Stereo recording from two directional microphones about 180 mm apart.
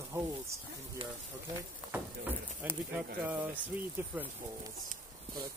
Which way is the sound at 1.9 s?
10° right (ahead or behind).